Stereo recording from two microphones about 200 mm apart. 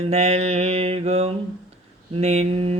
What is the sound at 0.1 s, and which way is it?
Mantra, 30° right (ahead or behind).